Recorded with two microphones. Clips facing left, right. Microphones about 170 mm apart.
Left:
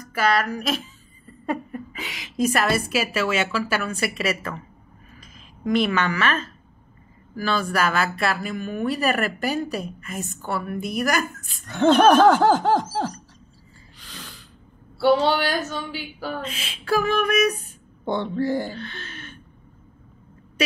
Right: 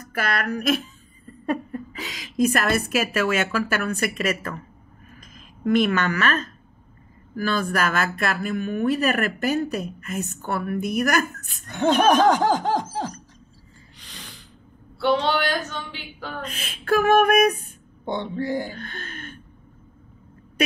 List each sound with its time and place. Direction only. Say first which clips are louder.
0.1 s speech: left 4 dB; 50° right (ahead or behind)
1.4 s a sound: right 1 dB; 20° left (ahead or behind)
2.1 s a woman's voice: right 1 dB; 50° right (ahead or behind)
12.4 s speech: left 3 dB; 15° right (ahead or behind)
13.9 s gasp: left 2 dB; 20° right (ahead or behind)
15.0 s a woman's voice: left 3 dB; 10° left (ahead or behind)
16.4 s speech: right 2 dB; 50° right (ahead or behind)
18.0 s speech: left 3 dB; 15° right (ahead or behind)
18.7 s speech: left 1 dB; 50° right (ahead or behind)